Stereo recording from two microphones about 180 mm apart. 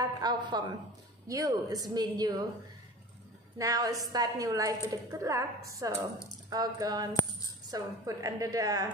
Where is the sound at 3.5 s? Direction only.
20° right (ahead or behind).